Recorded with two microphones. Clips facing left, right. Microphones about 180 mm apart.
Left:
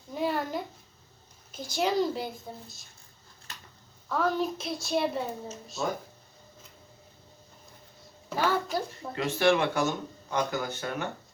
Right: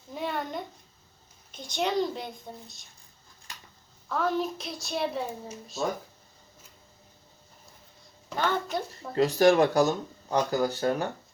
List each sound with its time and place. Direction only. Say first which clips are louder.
0.1 s a sound: left 3 dB; centre (ahead or behind)
1.5 s a child's voice: left 1 dB; 5° left (ahead or behind)
4.1 s a child's voice: even; centre (ahead or behind)
8.3 s a child's voice: left 1 dB; 5° left (ahead or behind)
9.1 s speech: right 5 dB; 40° right (ahead or behind)